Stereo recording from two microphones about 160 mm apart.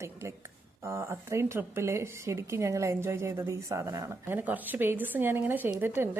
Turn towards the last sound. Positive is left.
turn(degrees=-15)  # may be behind; listen again after turning